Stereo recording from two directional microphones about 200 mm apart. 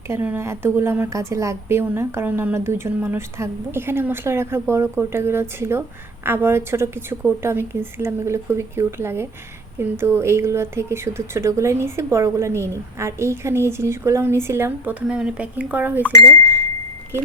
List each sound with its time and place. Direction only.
0.1 s speech: 10° right (ahead or behind)